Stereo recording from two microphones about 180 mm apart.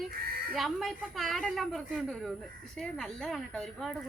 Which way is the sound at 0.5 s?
Centre (ahead or behind).